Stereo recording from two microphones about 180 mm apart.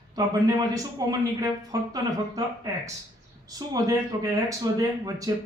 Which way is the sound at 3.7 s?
20° right (ahead or behind).